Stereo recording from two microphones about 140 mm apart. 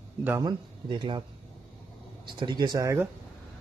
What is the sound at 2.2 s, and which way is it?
Speech, 30° right (ahead or behind).